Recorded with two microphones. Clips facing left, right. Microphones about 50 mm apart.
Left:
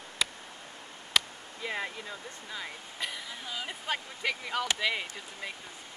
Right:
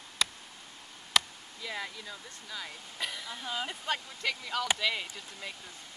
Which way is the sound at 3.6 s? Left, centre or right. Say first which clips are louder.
Left 2 dB; centre.